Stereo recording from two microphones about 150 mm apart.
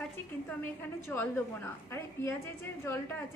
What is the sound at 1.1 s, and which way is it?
A woman's voice, 15° left (ahead or behind).